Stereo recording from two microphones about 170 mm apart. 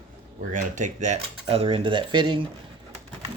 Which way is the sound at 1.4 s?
35° right (ahead or behind).